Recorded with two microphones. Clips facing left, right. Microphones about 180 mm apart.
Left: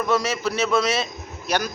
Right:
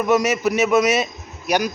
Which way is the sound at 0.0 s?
15° right (ahead or behind).